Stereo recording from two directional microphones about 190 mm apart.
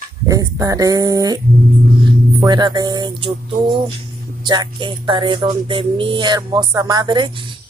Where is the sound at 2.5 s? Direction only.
20° right (ahead or behind).